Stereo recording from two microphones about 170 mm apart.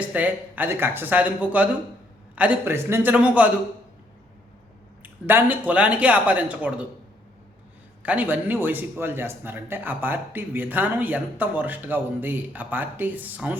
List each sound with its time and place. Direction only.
0.0 s a man's voice: 10° right (ahead or behind)
5.0 s a man's voice: 10° right (ahead or behind)
8.0 s a man's voice: 10° right (ahead or behind)